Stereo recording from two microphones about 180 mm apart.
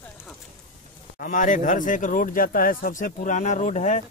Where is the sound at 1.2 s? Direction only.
45° left (ahead or behind).